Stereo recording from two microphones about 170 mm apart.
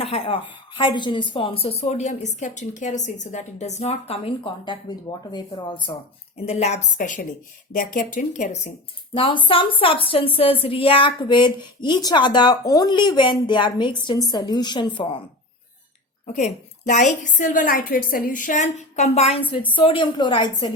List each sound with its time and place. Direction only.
0.0 s a woman's voice: 35° left (ahead or behind)
9.1 s a woman's voice: 30° left (ahead or behind)
16.2 s a woman's voice: 45° left (ahead or behind); by 20.7 s 25° left (ahead or behind)